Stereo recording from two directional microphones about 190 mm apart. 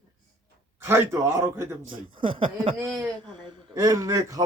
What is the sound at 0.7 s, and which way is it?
A man's voice, 15° right (ahead or behind).